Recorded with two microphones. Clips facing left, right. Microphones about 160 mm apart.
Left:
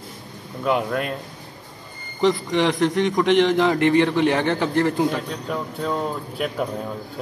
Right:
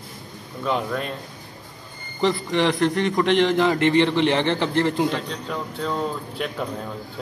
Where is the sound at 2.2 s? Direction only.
15° left (ahead or behind).